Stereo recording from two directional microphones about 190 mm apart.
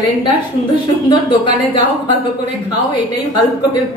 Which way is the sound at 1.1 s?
25° left (ahead or behind).